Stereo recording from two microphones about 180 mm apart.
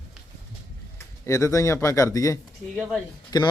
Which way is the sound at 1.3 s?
15° left (ahead or behind).